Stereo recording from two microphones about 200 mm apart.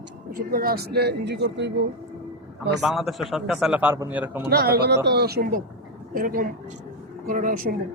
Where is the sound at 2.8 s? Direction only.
Centre (ahead or behind).